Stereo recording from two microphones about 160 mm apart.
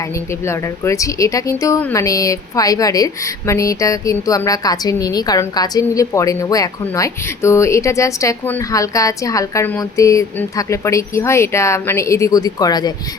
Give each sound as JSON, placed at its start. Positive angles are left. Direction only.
{"t": 0.4, "sound": "speech", "side_deg": 20}